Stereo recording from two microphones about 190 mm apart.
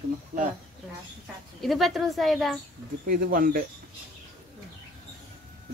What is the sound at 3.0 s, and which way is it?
Speech, 50° right (ahead or behind).